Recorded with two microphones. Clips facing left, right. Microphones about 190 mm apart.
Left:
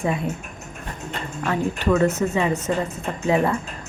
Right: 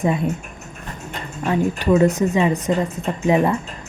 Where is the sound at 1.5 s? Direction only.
15° right (ahead or behind).